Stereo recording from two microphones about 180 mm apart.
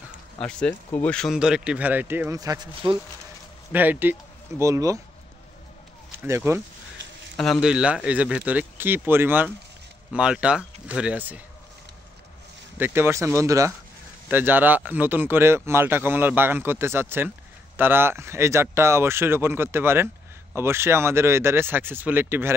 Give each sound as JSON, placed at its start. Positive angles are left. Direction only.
{"t": 0.4, "sound": "speech", "side_deg": 5}
{"t": 3.7, "sound": "a man's voice", "side_deg": -10}
{"t": 6.1, "sound": "speech", "side_deg": -15}
{"t": 7.3, "sound": "a man's voice", "side_deg": 5}
{"t": 12.7, "sound": "a man's voice", "side_deg": -10}